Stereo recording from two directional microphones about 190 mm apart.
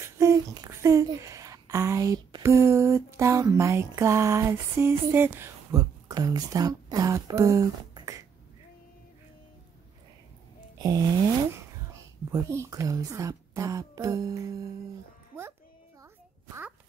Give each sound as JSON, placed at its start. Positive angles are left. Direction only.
{"t": 0.2, "sound": "speech", "side_deg": -15}
{"t": 10.8, "sound": "music", "side_deg": -20}
{"t": 11.9, "sound": "speech", "side_deg": -15}